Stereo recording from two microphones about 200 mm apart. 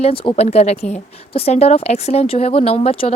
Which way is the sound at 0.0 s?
30° left (ahead or behind).